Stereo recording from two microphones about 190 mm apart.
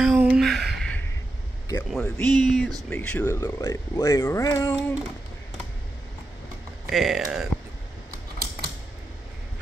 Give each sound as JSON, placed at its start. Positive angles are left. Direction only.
{"t": 0.0, "sound": "a sound", "side_deg": -5}
{"t": 2.0, "sound": "speech", "side_deg": 5}
{"t": 6.9, "sound": "speech", "side_deg": 0}
{"t": 8.1, "sound": "typewriter", "side_deg": -50}